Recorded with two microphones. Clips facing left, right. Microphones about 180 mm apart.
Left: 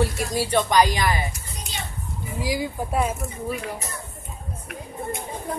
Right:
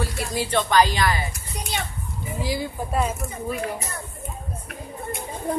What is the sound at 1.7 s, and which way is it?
Children playing, 65° right (ahead or behind).